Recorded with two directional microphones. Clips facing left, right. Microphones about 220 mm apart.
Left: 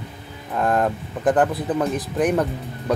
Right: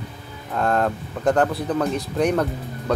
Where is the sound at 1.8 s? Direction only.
Centre (ahead or behind).